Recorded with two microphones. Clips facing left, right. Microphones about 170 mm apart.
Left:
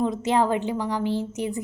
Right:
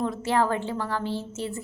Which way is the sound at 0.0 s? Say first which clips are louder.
Left 3 dB; 20° left (ahead or behind).